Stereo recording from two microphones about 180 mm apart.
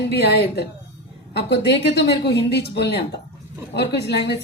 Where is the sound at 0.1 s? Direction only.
65° left (ahead or behind).